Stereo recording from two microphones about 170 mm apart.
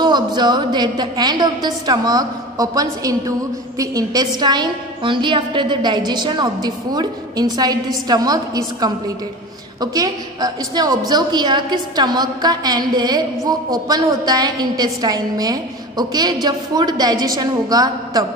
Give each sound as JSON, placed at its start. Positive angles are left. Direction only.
{"t": 0.0, "sound": "a woman's voice", "side_deg": -25}